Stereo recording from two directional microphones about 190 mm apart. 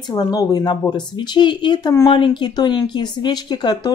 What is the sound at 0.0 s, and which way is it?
Speech, 20° left (ahead or behind).